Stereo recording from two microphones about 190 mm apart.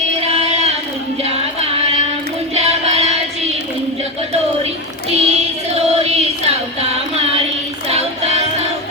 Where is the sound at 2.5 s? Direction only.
35° right (ahead or behind).